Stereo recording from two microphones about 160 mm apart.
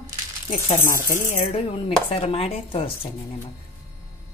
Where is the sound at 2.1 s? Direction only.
35° left (ahead or behind).